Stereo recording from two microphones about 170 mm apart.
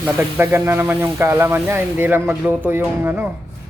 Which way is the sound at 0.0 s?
10° right (ahead or behind).